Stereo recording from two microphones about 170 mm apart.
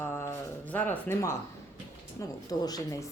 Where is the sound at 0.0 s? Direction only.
15° left (ahead or behind).